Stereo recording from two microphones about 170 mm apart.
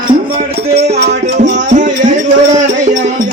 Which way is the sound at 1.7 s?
45° right (ahead or behind).